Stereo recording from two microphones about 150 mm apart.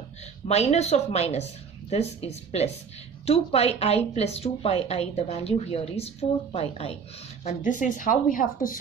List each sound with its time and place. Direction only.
0.5 s a woman's voice: 45° left (ahead or behind)
7.4 s a woman's voice: 60° left (ahead or behind)